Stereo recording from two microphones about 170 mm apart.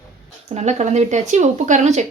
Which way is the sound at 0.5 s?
40° right (ahead or behind).